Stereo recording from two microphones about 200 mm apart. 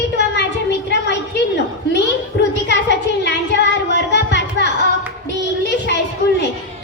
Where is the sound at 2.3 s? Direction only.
55° left (ahead or behind).